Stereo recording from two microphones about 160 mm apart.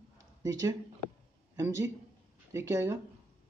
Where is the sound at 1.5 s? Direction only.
20° right (ahead or behind).